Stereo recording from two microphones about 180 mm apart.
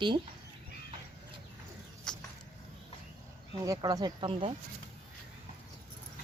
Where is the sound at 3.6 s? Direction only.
20° right (ahead or behind).